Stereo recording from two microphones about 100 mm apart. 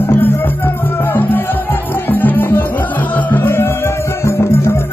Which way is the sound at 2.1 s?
20° left (ahead or behind).